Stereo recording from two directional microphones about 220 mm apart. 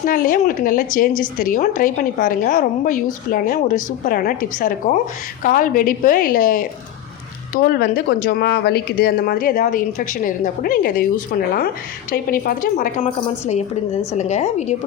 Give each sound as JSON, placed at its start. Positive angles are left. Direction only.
{"t": 0.0, "sound": "speech", "side_deg": 40}
{"t": 14.2, "sound": "speech", "side_deg": 30}